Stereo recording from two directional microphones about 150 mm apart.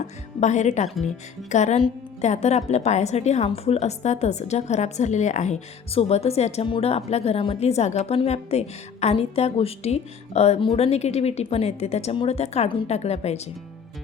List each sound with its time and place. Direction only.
0.3 s speech: 50° left (ahead or behind)